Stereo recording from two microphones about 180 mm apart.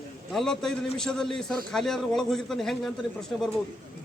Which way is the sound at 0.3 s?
5° left (ahead or behind).